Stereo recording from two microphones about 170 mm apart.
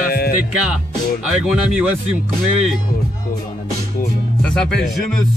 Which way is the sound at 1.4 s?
5° right (ahead or behind).